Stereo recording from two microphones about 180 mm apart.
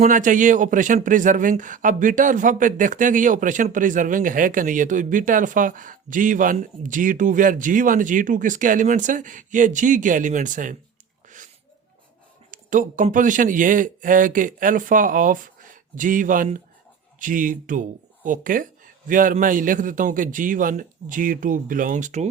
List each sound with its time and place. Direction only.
0.0 s speech: 45° right (ahead or behind)
12.5 s speech: 45° right (ahead or behind)